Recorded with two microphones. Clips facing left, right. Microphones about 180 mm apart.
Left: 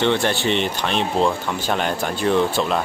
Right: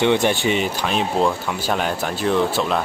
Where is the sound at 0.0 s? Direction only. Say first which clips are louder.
Right 2 dB; 15° right (ahead or behind).